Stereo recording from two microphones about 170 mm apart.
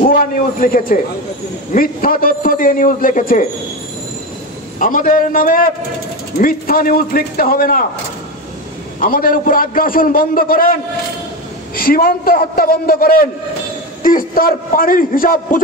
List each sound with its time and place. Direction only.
0.0 s a man's voice: 55° left (ahead or behind)
4.7 s a man's voice: 55° left (ahead or behind)
9.0 s a man's voice: 55° left (ahead or behind)